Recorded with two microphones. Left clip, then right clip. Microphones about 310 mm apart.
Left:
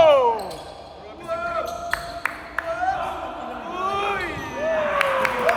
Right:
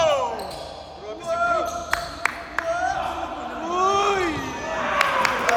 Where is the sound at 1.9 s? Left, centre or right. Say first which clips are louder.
Right 1 dB; centre.